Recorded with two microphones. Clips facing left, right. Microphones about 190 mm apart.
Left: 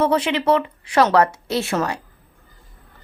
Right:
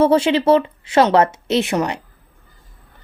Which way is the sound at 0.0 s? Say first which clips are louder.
Right 5 dB; 30° right (ahead or behind).